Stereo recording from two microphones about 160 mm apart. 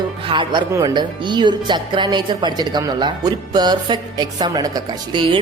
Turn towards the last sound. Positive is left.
turn(degrees=-30)  # may be behind; listen again after turning